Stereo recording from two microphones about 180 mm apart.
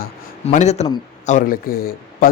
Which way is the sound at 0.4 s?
40° left (ahead or behind).